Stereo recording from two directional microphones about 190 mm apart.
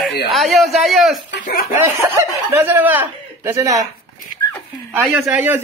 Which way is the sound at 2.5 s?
10° right (ahead or behind).